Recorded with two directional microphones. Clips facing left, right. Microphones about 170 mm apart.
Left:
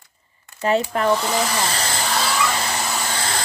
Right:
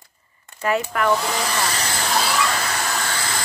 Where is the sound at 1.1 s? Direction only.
Centre (ahead or behind).